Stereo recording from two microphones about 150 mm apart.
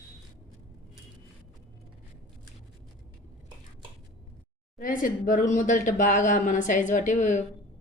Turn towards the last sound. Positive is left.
turn(degrees=55)  # may be behind; listen again after turning